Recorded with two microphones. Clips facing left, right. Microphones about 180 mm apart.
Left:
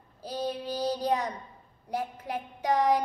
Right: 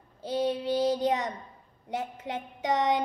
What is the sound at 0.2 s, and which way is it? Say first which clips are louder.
Child singing: right 4 dB; 25° right (ahead or behind).